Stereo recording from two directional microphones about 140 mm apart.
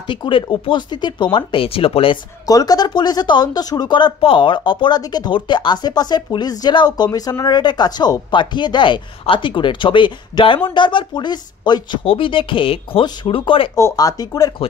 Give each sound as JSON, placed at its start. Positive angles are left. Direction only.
{"t": 0.0, "sound": "speech", "side_deg": 35}
{"t": 2.4, "sound": "speech", "side_deg": 25}
{"t": 13.7, "sound": "speech", "side_deg": 20}